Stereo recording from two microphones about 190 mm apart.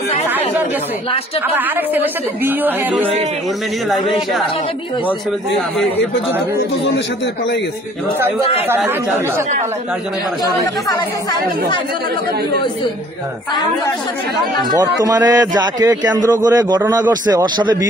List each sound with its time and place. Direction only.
1.5 s speech: 10° right (ahead or behind)
15.0 s a man's voice: 20° right (ahead or behind)